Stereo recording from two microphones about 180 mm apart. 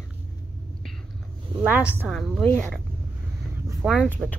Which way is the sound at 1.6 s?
10° right (ahead or behind).